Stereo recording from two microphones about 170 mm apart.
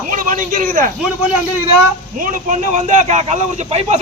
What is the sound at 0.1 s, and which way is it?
Speech, 50° right (ahead or behind).